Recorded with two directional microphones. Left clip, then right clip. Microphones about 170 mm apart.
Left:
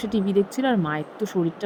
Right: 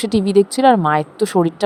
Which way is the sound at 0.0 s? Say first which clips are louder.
Right 8 dB; 60° right (ahead or behind).